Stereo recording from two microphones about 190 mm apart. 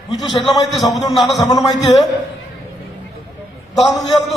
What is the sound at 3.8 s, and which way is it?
Speech, centre (ahead or behind).